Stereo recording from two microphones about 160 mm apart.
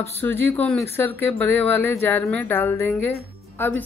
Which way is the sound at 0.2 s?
15° left (ahead or behind).